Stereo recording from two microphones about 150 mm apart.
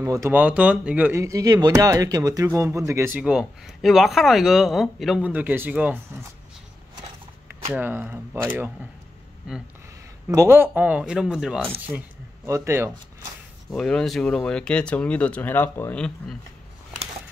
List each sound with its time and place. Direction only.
0.0 s speech: 20° right (ahead or behind)
1.2 s speech: 20° right (ahead or behind)
3.2 s speech: 5° right (ahead or behind)
7.7 s speech: 10° right (ahead or behind)
10.2 s speech: 15° right (ahead or behind)
12.4 s speech: 20° right (ahead or behind)
13.7 s speech: 5° left (ahead or behind)